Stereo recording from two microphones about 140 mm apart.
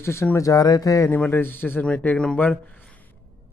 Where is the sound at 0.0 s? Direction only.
20° left (ahead or behind).